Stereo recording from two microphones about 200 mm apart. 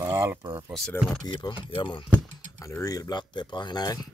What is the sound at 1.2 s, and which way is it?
Speech, 20° left (ahead or behind).